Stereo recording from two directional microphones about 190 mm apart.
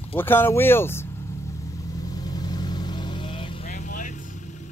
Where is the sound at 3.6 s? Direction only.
40° left (ahead or behind).